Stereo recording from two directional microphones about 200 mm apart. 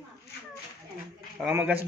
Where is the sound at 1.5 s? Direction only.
10° right (ahead or behind).